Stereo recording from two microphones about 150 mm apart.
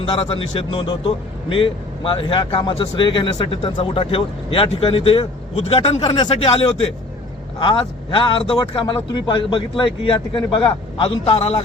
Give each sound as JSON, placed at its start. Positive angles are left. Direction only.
{"t": 0.0, "sound": "a man's voice", "side_deg": 35}